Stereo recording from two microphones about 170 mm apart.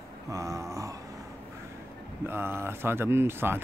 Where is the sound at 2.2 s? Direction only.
15° right (ahead or behind).